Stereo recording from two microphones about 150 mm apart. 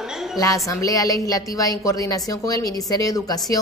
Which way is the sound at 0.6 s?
25° left (ahead or behind).